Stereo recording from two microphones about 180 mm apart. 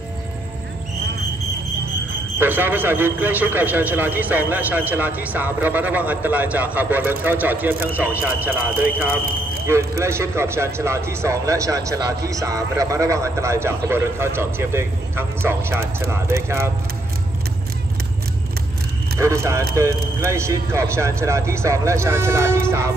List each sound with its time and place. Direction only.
2.3 s speech: 10° right (ahead or behind)
9.7 s speech: 15° right (ahead or behind)
19.1 s speech: 15° right (ahead or behind)